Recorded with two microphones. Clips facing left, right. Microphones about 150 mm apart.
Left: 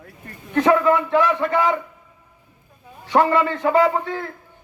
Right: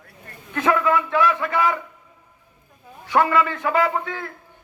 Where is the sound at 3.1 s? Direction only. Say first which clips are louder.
Left 2 dB; 25° left (ahead or behind).